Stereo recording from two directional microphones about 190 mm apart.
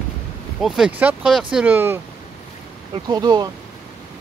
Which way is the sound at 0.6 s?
Centre (ahead or behind).